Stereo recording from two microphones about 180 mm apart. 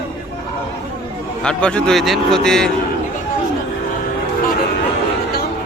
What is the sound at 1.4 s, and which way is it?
A man's voice, 5° left (ahead or behind).